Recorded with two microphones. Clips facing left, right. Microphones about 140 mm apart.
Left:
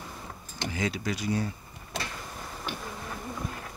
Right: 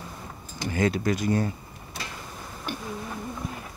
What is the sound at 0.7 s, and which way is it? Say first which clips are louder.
Speech: right 7 dB; 50° right (ahead or behind).